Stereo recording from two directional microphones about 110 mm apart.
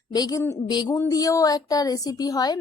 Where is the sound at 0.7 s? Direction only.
40° left (ahead or behind).